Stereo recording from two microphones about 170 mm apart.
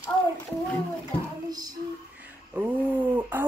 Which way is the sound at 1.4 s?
20° right (ahead or behind).